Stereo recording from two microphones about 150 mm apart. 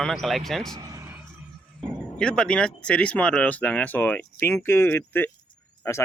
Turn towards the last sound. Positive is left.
turn(degrees=20)  # may be behind; listen again after turning